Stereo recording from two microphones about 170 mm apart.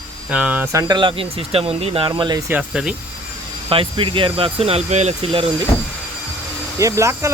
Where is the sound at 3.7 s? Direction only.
30° right (ahead or behind).